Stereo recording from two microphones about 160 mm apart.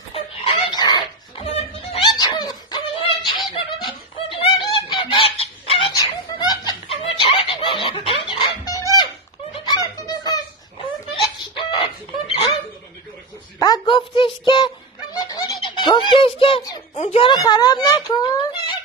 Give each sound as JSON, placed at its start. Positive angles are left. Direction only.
{"t": 0.1, "sound": "chicken", "side_deg": 35}
{"t": 0.7, "sound": "dog", "side_deg": 25}
{"t": 1.8, "sound": "music", "side_deg": 40}
{"t": 2.1, "sound": "dog", "side_deg": 25}
{"t": 3.5, "sound": "snicker", "side_deg": 35}
{"t": 5.9, "sound": "fowl", "side_deg": 25}
{"t": 8.3, "sound": "music", "side_deg": 30}
{"t": 8.9, "sound": "giggle", "side_deg": 25}
{"t": 11.3, "sound": "a sound", "side_deg": 35}
{"t": 13.6, "sound": "a sound", "side_deg": 30}
{"t": 15.1, "sound": "fowl", "side_deg": 25}
{"t": 15.6, "sound": "bird", "side_deg": 30}
{"t": 16.6, "sound": "a sound", "side_deg": 25}
{"t": 17.0, "sound": "a sound", "side_deg": 35}